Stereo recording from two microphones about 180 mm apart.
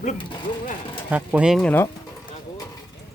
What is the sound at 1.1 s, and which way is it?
Speech, 5° right (ahead or behind).